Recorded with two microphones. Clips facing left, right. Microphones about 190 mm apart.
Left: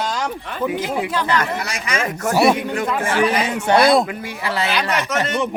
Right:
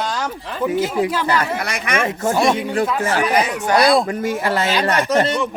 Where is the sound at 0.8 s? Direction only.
5° right (ahead or behind).